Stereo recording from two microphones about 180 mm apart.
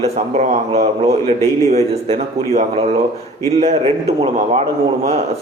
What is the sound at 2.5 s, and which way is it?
A man's voice, 35° right (ahead or behind).